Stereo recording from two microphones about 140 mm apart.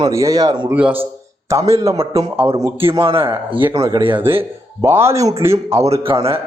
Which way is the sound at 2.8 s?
40° right (ahead or behind).